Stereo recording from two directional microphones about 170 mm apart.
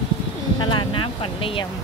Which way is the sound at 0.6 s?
30° left (ahead or behind).